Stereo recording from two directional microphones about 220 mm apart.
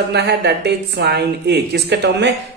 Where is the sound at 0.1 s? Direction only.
50° right (ahead or behind).